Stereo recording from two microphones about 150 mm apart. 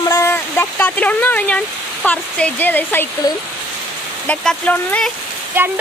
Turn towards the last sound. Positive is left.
turn(degrees=-15)  # may be behind; listen again after turning